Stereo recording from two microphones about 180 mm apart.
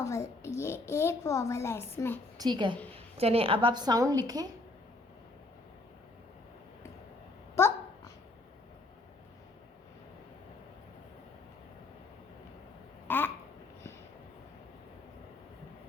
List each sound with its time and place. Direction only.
0.0 s a child's voice: 15° left (ahead or behind)
2.4 s a woman's voice: 25° right (ahead or behind)
7.5 s dog: 15° left (ahead or behind)
13.1 s babbling: 10° left (ahead or behind)